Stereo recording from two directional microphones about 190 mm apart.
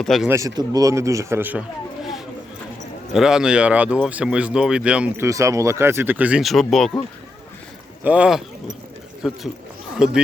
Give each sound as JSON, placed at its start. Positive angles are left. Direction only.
{"t": 0.0, "sound": "speech", "side_deg": 0}
{"t": 0.3, "sound": "speech", "side_deg": -15}
{"t": 3.1, "sound": "speech", "side_deg": -5}
{"t": 8.0, "sound": "speech", "side_deg": -5}